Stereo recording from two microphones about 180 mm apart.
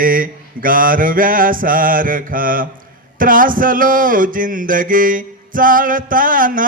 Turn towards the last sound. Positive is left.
turn(degrees=-50)  # may be behind; listen again after turning